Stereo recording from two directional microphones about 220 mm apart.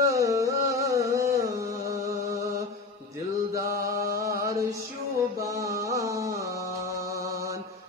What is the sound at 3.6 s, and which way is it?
Mantra, 45° left (ahead or behind).